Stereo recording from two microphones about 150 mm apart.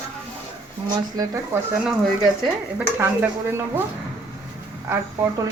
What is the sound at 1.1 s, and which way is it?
Speech, 20° right (ahead or behind).